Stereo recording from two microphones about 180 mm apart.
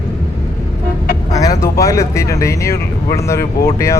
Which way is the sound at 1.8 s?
15° left (ahead or behind).